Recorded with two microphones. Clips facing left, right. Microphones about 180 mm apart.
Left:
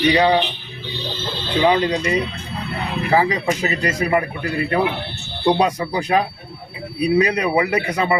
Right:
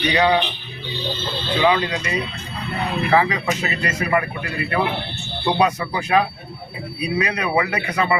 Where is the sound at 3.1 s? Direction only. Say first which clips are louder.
Left 2 dB; 30° left (ahead or behind).